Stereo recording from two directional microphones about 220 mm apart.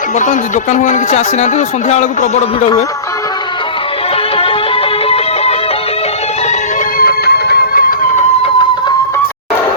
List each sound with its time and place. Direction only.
0.2 s speech: 35° left (ahead or behind)
5.0 s music: 25° left (ahead or behind)
7.0 s music: 45° left (ahead or behind)